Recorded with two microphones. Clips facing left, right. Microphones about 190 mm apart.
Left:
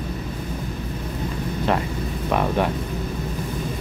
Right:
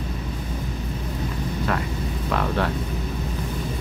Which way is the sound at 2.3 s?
15° left (ahead or behind).